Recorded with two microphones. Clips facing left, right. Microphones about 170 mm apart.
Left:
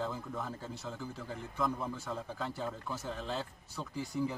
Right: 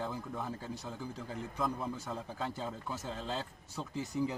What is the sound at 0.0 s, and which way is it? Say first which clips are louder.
A man's voice: left 1 dB; 15° right (ahead or behind).